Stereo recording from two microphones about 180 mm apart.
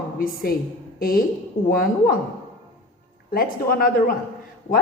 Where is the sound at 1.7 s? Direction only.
55° left (ahead or behind).